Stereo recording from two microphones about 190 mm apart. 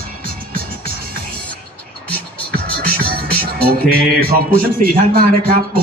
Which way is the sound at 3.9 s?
50° right (ahead or behind).